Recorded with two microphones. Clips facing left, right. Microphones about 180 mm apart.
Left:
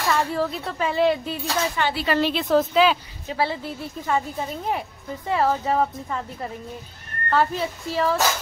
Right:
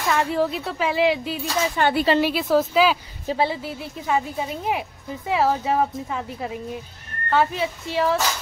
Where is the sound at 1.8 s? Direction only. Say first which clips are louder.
Right 4 dB; 50° right (ahead or behind).